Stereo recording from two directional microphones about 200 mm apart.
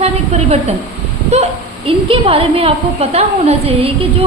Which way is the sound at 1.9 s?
30° right (ahead or behind).